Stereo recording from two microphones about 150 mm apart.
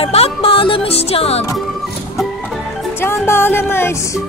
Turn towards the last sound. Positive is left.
turn(degrees=15)  # may be behind; listen again after turning